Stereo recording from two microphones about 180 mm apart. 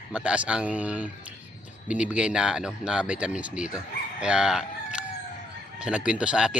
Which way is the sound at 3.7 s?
5° right (ahead or behind).